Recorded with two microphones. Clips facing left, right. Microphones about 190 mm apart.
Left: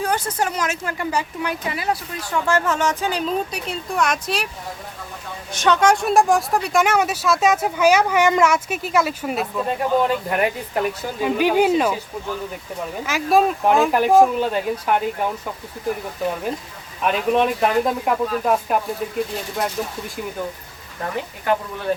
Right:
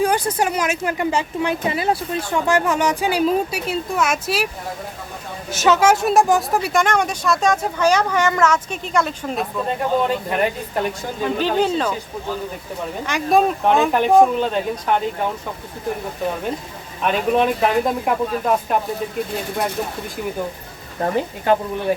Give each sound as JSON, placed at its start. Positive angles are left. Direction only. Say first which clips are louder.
{"t": 0.0, "sound": "a woman's voice", "louder": "right 4 dB", "side_deg": -15}
{"t": 2.5, "sound": "speech", "louder": "right 2 dB", "side_deg": -15}
{"t": 5.5, "sound": "speech", "louder": "right 2 dB", "side_deg": -5}
{"t": 13.1, "sound": "speech", "louder": "right 1 dB", "side_deg": 5}
{"t": 17.0, "sound": "speech", "louder": "right 1 dB", "side_deg": 0}
{"t": 21.0, "sound": "a woman's voice", "louder": "right 6 dB", "side_deg": -30}